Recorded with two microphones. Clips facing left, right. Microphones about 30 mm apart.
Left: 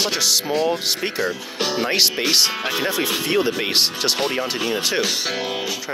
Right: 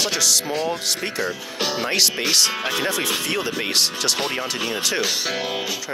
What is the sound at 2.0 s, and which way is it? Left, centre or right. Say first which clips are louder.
Speech: left 1 dB; centre.